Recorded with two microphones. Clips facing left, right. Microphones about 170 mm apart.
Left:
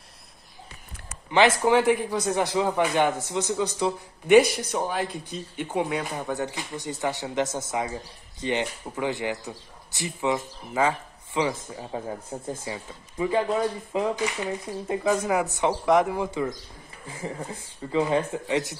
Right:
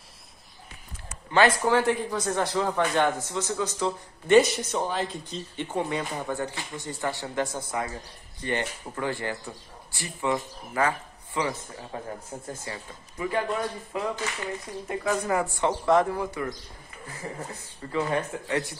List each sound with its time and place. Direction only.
1.3 s speech: 15° left (ahead or behind)
17.9 s speech: 15° left (ahead or behind)